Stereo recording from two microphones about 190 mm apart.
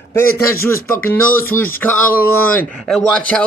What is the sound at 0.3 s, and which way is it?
Speech, 50° left (ahead or behind).